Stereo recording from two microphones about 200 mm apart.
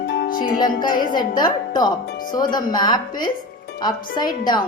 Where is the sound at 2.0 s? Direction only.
45° left (ahead or behind).